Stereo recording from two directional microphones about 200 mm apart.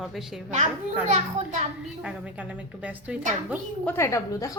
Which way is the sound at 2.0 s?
5° right (ahead or behind).